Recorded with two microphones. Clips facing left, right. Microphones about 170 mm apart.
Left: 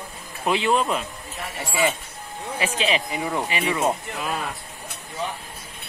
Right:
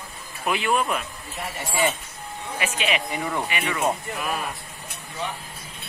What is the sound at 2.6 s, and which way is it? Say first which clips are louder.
Speech: left 2 dB; 30° left (ahead or behind).